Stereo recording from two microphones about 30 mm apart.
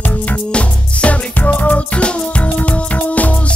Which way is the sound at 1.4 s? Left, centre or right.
Left.